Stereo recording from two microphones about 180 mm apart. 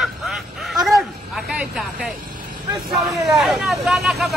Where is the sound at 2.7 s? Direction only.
Centre (ahead or behind).